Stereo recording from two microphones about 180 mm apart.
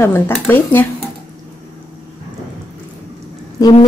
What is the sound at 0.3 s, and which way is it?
Speech, 10° left (ahead or behind).